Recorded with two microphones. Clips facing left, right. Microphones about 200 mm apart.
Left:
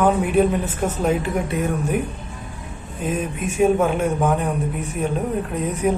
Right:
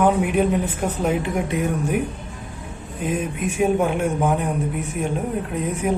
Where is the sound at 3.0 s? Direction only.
15° right (ahead or behind).